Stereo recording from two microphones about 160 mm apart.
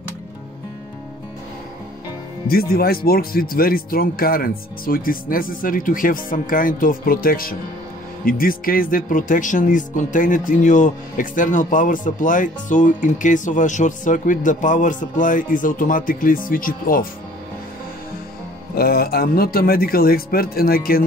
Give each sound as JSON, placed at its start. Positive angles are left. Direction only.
{"t": 2.4, "sound": "speech", "side_deg": 70}
{"t": 18.8, "sound": "speech", "side_deg": 75}